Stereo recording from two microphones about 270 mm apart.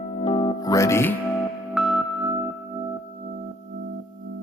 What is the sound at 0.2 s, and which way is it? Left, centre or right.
Music, centre.